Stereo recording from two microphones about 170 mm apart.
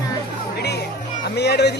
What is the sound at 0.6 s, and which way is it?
Music, 70° left (ahead or behind).